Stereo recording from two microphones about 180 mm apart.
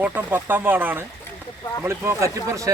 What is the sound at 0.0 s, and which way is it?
Speech, 10° right (ahead or behind).